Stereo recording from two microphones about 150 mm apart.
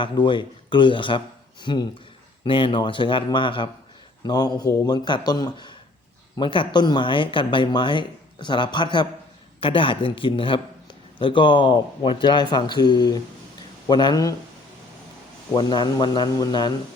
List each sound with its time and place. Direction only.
0.0 s speech: 30° left (ahead or behind)
15.5 s speech: 30° left (ahead or behind)